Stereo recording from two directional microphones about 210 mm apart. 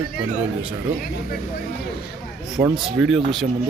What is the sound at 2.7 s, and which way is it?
Speech, centre (ahead or behind).